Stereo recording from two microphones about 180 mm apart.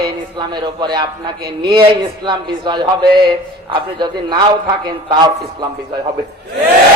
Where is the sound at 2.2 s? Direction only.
25° right (ahead or behind).